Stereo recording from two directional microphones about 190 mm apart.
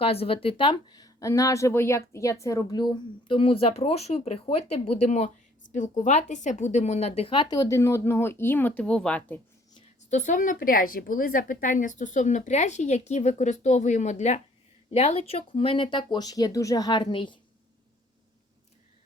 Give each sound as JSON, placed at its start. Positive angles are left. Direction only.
{"t": 0.0, "sound": "a woman's voice", "side_deg": 30}
{"t": 10.1, "sound": "a woman's voice", "side_deg": 40}